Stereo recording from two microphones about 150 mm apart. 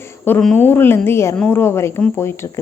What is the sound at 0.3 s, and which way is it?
Speech, 10° left (ahead or behind).